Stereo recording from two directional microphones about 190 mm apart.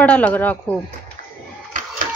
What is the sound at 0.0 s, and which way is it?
Speech, 5° left (ahead or behind).